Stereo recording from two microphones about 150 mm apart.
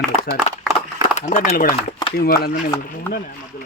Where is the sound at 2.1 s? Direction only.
85° left.